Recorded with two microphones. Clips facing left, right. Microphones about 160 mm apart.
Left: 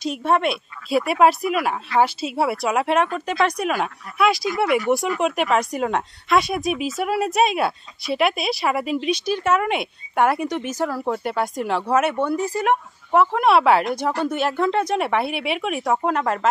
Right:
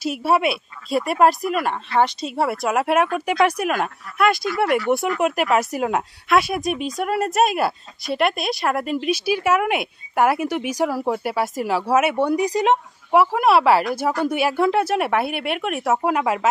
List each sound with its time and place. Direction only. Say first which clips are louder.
0.0 s speech: right 1 dB; 5° right (ahead or behind)
13.1 s speech: right 1 dB; 5° right (ahead or behind)